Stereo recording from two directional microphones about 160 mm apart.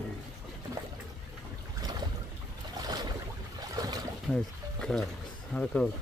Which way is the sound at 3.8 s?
25° right (ahead or behind).